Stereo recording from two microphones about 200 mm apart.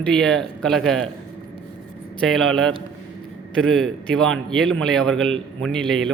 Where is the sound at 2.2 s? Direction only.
Centre (ahead or behind).